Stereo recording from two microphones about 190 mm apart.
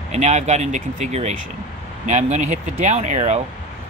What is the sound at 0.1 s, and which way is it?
Speech, 35° right (ahead or behind).